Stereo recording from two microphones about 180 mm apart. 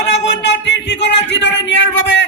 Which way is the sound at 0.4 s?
80° left.